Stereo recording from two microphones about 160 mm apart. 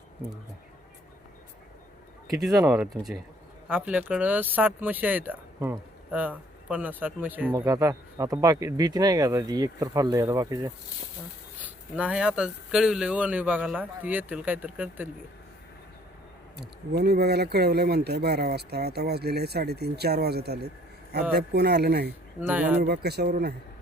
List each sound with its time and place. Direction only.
2.6 s speech: 5° right (ahead or behind)
11.6 s speech: 10° right (ahead or behind)
16.9 s speech: 90° right
22.4 s speech: 10° right (ahead or behind)
22.8 s speech: 90° right